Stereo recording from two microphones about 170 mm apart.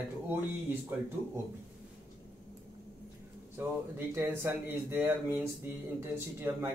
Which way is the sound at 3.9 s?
15° right (ahead or behind).